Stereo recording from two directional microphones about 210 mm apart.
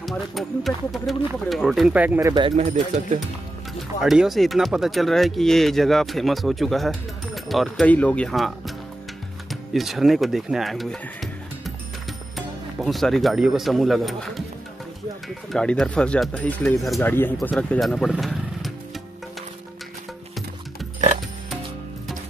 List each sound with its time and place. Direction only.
0.0 s speech: centre (ahead or behind); by 2.5 s 20° right (ahead or behind)
2.5 s speech: 35° right (ahead or behind)
4.0 s speech: centre (ahead or behind)